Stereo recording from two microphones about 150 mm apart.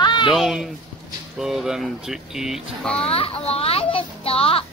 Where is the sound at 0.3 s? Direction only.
Centre (ahead or behind).